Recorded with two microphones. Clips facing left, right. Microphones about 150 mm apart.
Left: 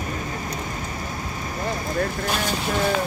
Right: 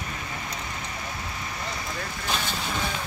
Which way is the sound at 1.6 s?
55° left (ahead or behind).